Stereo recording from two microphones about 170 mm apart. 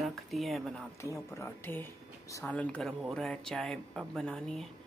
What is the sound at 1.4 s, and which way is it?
Speech, 10° left (ahead or behind).